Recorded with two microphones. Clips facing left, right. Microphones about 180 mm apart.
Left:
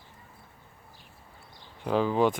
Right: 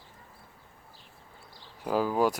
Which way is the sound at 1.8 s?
5° right (ahead or behind).